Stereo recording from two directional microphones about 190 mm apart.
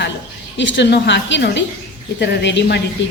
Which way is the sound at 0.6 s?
70° left (ahead or behind).